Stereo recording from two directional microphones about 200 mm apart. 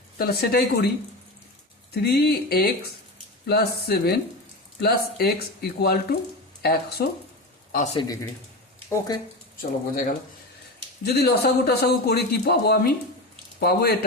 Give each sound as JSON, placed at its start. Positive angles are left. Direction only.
{"t": 0.2, "sound": "a man's voice", "side_deg": 50}
{"t": 1.9, "sound": "a man's voice", "side_deg": 55}
{"t": 7.9, "sound": "speech", "side_deg": 15}
{"t": 9.6, "sound": "a man's voice", "side_deg": 45}